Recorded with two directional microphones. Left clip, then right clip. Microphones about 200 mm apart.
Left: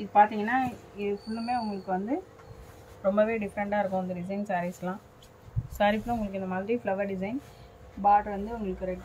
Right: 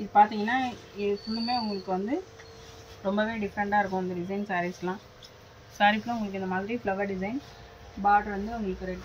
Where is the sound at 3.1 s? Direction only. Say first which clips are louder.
Left 4 dB; 25° left (ahead or behind).